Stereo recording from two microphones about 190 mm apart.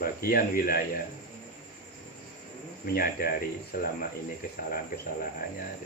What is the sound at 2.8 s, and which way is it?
Speech, 50° left (ahead or behind).